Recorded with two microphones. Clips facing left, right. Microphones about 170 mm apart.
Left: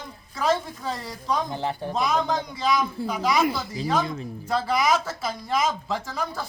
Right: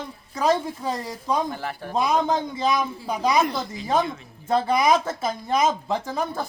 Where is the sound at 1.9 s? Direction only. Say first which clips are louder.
Right 4 dB; 15° right (ahead or behind).